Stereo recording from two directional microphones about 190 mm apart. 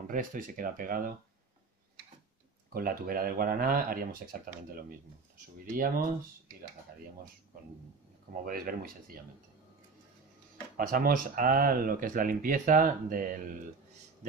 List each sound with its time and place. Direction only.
0.1 s speech: 45° right (ahead or behind)
2.7 s speech: 50° right (ahead or behind)
8.5 s speech: 50° right (ahead or behind)
10.8 s speech: 50° right (ahead or behind)